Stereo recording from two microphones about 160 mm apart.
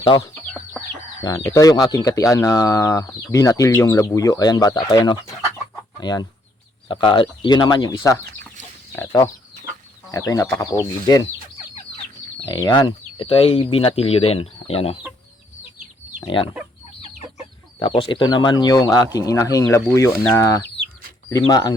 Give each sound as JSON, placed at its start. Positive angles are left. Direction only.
{"t": 0.2, "sound": "chicken", "side_deg": 15}
{"t": 1.2, "sound": "speech", "side_deg": 20}
{"t": 12.5, "sound": "speech", "side_deg": 15}
{"t": 12.7, "sound": "speech", "side_deg": 30}
{"t": 16.2, "sound": "speech", "side_deg": 30}
{"t": 17.7, "sound": "speech", "side_deg": 30}